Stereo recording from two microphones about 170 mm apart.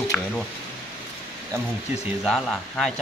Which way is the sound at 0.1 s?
5° left (ahead or behind).